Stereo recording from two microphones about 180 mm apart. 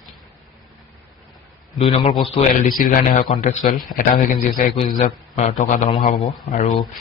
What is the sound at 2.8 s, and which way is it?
Speech, 50° left (ahead or behind).